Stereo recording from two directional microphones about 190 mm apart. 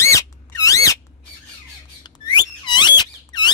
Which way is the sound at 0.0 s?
15° left (ahead or behind).